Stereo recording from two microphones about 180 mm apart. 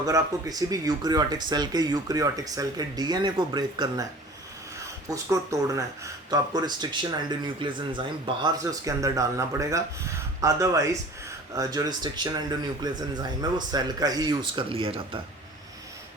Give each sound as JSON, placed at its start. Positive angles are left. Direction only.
{"t": 0.0, "sound": "speech", "side_deg": -20}
{"t": 5.0, "sound": "speech", "side_deg": -15}